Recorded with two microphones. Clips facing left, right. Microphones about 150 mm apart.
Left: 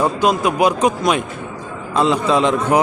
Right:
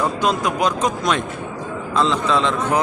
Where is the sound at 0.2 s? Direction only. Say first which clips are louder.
Left 4 dB; 10° left (ahead or behind).